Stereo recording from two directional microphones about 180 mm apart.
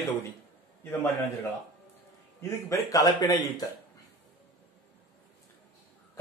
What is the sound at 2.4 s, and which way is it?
A man's voice, 15° left (ahead or behind).